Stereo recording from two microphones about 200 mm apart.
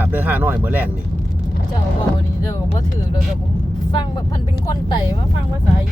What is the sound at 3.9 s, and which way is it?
Speech, 20° left (ahead or behind).